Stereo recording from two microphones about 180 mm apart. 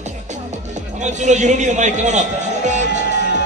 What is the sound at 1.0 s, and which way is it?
Speech, 40° right (ahead or behind).